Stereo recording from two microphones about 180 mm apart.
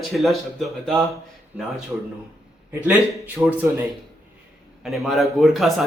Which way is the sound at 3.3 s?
10° right (ahead or behind).